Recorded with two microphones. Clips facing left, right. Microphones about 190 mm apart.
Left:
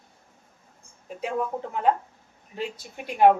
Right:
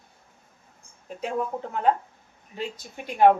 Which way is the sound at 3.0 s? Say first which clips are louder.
Even; 5° left (ahead or behind).